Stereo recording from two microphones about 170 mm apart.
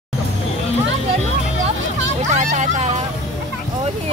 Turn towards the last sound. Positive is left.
turn(degrees=-45)  # may be behind; listen again after turning